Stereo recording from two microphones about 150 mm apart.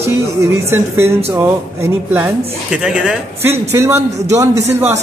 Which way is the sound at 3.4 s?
20° right (ahead or behind).